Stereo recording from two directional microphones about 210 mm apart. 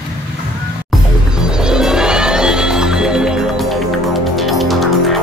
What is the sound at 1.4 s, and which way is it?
Music, 5° right (ahead or behind).